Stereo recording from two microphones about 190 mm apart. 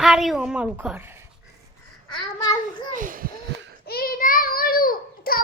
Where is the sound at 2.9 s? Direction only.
45° right (ahead or behind).